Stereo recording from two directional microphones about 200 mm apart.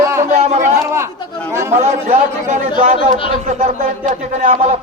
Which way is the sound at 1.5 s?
15° right (ahead or behind).